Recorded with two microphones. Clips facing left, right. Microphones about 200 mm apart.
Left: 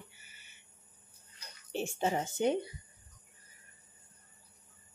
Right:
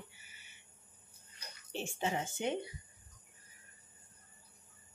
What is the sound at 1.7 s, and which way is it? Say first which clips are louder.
Speech: left 4 dB; 40° left (ahead or behind).